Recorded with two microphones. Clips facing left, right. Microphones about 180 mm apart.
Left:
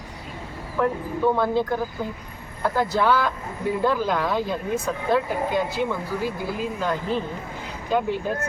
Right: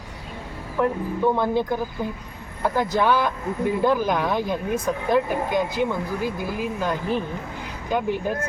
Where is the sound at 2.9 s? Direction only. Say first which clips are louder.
Right 1 dB; 15° right (ahead or behind).